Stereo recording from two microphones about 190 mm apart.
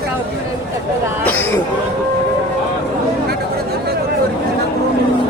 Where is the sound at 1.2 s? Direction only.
10° left (ahead or behind).